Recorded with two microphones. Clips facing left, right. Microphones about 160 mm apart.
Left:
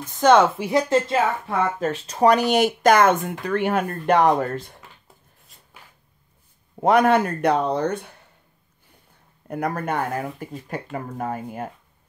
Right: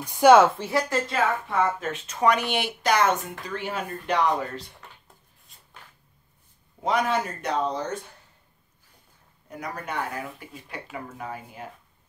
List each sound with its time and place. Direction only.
0.0 s speech: 10° right (ahead or behind)
0.6 s speech: 20° left (ahead or behind)
1.8 s speech: 35° left (ahead or behind); by 4.7 s 50° left (ahead or behind)
6.8 s speech: 55° left (ahead or behind)
9.5 s speech: 55° left (ahead or behind)